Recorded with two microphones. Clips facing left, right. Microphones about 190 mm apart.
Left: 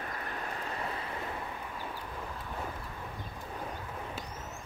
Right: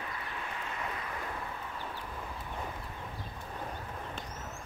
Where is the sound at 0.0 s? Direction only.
45° left (ahead or behind).